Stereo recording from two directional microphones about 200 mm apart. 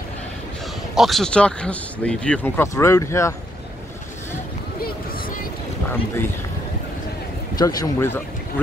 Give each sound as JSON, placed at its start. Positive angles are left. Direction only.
{"t": 0.9, "sound": "speech", "side_deg": 0}
{"t": 7.5, "sound": "speech", "side_deg": 20}